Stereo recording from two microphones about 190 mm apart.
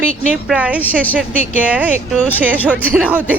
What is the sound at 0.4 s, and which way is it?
Speech, 5° right (ahead or behind).